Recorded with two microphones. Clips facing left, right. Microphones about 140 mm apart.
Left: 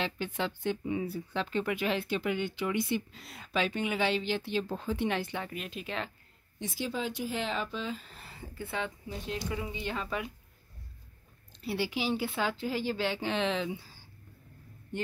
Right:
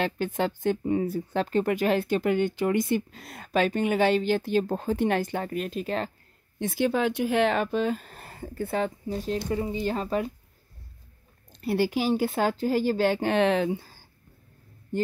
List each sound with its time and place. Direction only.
0.0 s speech: 45° right (ahead or behind)
6.6 s speech: 60° right (ahead or behind); by 10.3 s 40° right (ahead or behind)
11.5 s speech: 45° right (ahead or behind)